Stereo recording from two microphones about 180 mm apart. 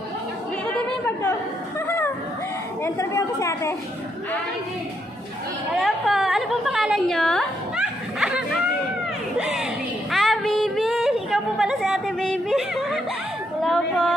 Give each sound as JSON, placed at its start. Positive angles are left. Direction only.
{"t": 0.8, "sound": "chatter", "side_deg": 10}
{"t": 1.9, "sound": "a sound", "side_deg": 10}
{"t": 2.8, "sound": "a woman's voice", "side_deg": 15}
{"t": 5.8, "sound": "a woman's voice", "side_deg": 0}
{"t": 9.4, "sound": "speech", "side_deg": 0}
{"t": 10.1, "sound": "a sound", "side_deg": 0}
{"t": 13.6, "sound": "speech", "side_deg": 0}